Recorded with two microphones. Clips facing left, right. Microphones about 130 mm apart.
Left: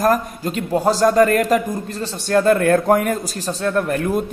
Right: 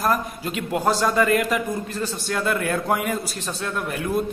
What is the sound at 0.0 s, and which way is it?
A man's voice, 40° left (ahead or behind).